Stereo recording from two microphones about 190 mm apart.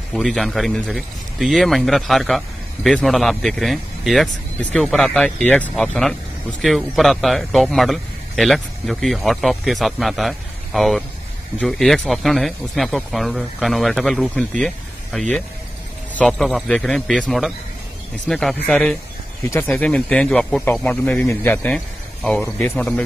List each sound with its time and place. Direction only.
0.1 s a man's voice: centre (ahead or behind)